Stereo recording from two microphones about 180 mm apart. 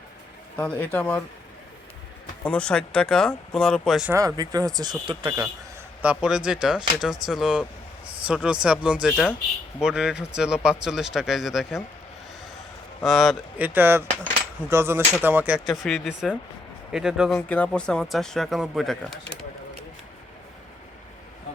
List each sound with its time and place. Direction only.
0.6 s speech: 10° left (ahead or behind)
2.4 s speech: 5° left (ahead or behind)
4.1 s speech: 15° right (ahead or behind)
6.2 s speech: 5° right (ahead or behind)
13.1 s speech: centre (ahead or behind)